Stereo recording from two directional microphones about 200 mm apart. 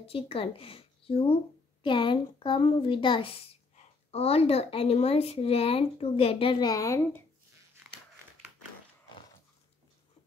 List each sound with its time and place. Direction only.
0.0 s a woman's voice: 30° left (ahead or behind)